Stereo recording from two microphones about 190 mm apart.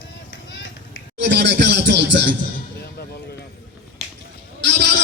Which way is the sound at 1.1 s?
65° right (ahead or behind).